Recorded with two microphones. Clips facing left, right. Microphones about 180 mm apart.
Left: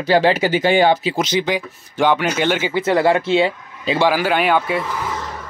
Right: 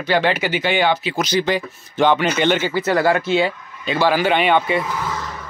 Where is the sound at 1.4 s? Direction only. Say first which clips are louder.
Right 1 dB; 10° left (ahead or behind).